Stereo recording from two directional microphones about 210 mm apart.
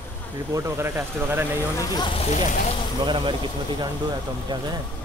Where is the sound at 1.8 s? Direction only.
20° left (ahead or behind).